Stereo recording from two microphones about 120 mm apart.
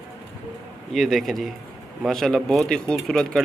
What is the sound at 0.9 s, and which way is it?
A man's voice, centre (ahead or behind).